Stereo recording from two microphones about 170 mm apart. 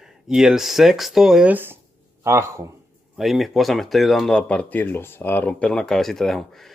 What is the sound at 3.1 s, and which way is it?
Speech, centre (ahead or behind).